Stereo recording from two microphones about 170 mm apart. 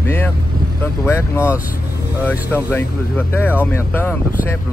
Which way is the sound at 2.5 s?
10° left (ahead or behind).